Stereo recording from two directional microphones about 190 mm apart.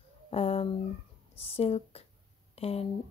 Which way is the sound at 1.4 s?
30° left (ahead or behind).